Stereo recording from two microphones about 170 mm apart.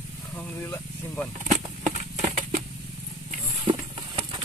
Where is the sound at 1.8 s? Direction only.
45° right (ahead or behind).